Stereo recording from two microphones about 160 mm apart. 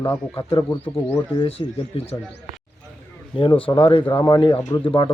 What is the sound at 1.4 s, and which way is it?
Speech, 40° left (ahead or behind).